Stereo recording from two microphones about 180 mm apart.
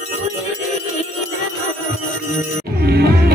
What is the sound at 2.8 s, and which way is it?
Music, 60° right (ahead or behind).